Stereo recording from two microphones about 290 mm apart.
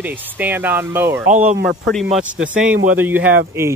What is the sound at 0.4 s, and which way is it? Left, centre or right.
Speech, centre.